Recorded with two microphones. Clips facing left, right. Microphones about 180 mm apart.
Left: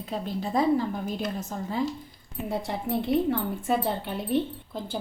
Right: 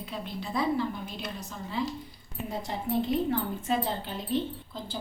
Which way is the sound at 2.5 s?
65° left (ahead or behind).